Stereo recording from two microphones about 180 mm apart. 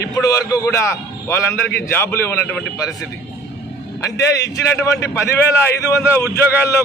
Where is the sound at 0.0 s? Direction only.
20° left (ahead or behind).